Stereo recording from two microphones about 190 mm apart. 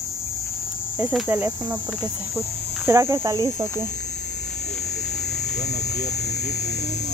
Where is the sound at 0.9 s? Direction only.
5° right (ahead or behind).